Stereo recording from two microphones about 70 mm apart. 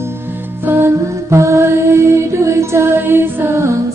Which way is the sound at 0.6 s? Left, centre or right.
Right.